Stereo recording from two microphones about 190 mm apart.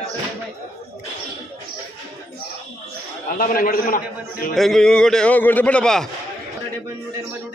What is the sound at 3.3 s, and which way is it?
A man's voice, 50° left (ahead or behind).